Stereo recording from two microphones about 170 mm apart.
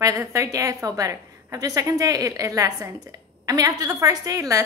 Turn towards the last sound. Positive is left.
turn(degrees=-20)  # may be behind; listen again after turning